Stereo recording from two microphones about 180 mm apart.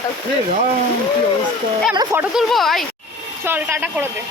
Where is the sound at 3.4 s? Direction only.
10° right (ahead or behind).